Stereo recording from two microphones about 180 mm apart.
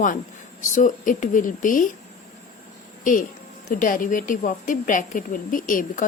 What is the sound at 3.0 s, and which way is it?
Speech, 50° left (ahead or behind).